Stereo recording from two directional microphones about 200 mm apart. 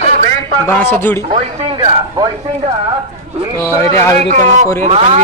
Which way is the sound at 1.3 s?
30° right (ahead or behind).